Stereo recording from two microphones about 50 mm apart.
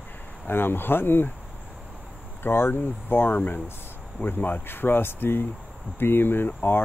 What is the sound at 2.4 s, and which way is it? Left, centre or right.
Speech, left.